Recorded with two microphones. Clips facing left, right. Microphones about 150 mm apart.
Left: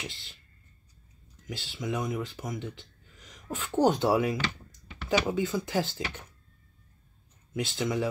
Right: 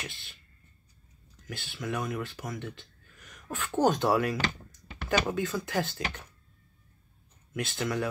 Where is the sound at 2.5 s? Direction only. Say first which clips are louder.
Left 2 dB; 15° left (ahead or behind).